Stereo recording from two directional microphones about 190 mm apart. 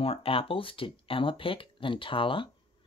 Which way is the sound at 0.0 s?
30° left (ahead or behind).